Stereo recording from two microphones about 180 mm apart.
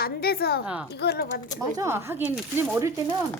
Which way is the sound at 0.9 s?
65° left (ahead or behind).